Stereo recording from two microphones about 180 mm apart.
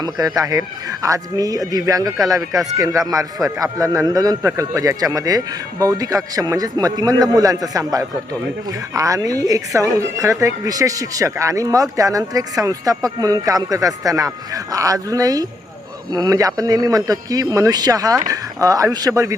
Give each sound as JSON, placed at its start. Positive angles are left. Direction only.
{"t": 0.0, "sound": "speech", "side_deg": -20}